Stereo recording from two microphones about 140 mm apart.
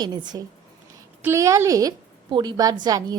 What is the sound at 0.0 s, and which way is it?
Speech, 30° right (ahead or behind).